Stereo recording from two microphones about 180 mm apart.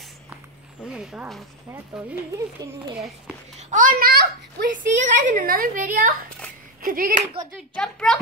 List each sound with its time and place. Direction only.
0.8 s speech: 5° right (ahead or behind)
2.3 s speech: 20° right (ahead or behind)
3.5 s a child's voice: 45° right (ahead or behind); by 4.8 s 65° right (ahead or behind)
4.9 s a woman's voice: 45° right (ahead or behind)
7.5 s speech: 5° left (ahead or behind)